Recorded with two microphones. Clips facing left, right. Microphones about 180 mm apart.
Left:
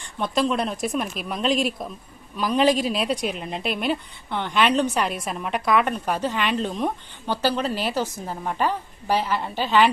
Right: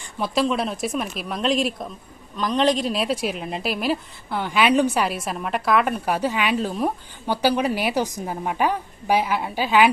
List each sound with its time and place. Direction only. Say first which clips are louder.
0.2 s a woman's voice: right 1 dB; centre (ahead or behind)